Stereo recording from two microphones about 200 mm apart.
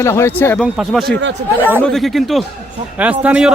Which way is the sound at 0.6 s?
Centre (ahead or behind).